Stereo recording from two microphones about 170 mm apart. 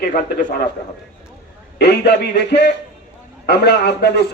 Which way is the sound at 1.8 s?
85° left.